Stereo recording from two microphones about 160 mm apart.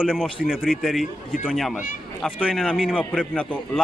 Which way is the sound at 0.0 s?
5° right (ahead or behind).